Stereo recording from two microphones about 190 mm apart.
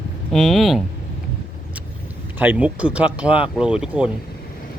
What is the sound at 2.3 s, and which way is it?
Speech, 10° right (ahead or behind).